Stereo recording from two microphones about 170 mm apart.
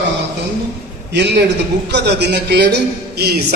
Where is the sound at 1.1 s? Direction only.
90° right.